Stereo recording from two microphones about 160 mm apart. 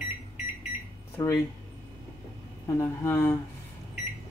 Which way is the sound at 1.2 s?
20° left (ahead or behind).